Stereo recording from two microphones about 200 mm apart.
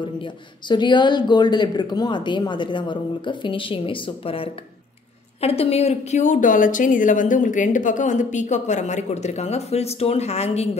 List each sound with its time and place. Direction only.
0.2 s a woman's voice: 20° left (ahead or behind)